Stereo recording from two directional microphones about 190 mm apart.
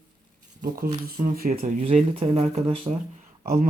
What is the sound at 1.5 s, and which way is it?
Speech, 35° right (ahead or behind).